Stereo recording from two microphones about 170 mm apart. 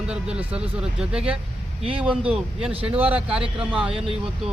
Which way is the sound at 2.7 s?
35° right (ahead or behind).